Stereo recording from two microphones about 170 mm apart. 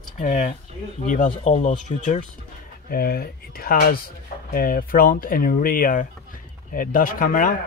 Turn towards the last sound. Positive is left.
turn(degrees=55)  # may be behind; listen again after turning